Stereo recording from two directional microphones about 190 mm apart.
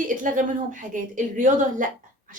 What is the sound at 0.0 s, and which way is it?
A woman's voice, 45° right (ahead or behind).